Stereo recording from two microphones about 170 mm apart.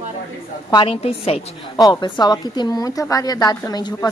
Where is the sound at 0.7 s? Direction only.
30° left (ahead or behind).